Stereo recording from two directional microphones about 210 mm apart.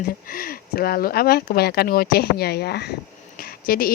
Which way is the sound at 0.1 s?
45° left (ahead or behind).